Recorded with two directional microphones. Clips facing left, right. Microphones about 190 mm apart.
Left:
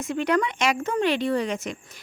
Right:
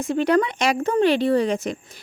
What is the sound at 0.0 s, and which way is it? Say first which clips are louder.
Speech: right 4 dB; 35° right (ahead or behind).